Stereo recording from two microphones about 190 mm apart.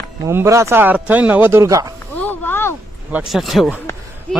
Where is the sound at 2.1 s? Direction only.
10° left (ahead or behind).